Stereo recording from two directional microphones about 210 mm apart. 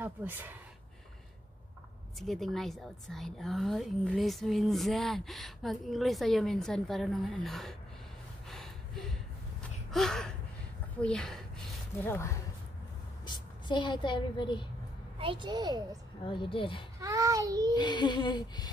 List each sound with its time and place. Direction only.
0.0 s speech: 10° right (ahead or behind)
2.1 s a woman's voice: centre (ahead or behind)
8.5 s a sound: centre (ahead or behind)
9.8 s gasp: centre (ahead or behind)
11.0 s a woman's voice: 5° left (ahead or behind); by 14.7 s 20° left (ahead or behind)
15.1 s a woman's voice: 25° right (ahead or behind)
16.3 s a sound: 25° left (ahead or behind)
17.0 s child singing: 15° right (ahead or behind)
17.7 s a sound: 20° left (ahead or behind)